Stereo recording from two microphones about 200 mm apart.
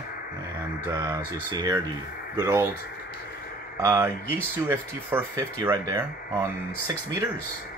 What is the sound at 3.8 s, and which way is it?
Speech, 15° right (ahead or behind).